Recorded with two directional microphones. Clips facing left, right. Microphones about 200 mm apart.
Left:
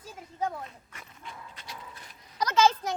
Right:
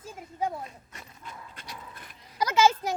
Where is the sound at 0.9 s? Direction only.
35° right (ahead or behind).